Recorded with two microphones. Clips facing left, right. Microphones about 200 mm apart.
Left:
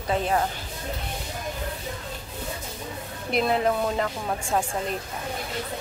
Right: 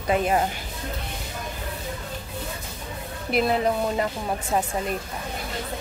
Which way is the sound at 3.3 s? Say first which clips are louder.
Right 1 dB; centre (ahead or behind).